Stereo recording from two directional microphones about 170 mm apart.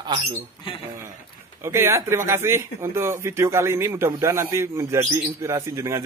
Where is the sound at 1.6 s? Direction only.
15° right (ahead or behind).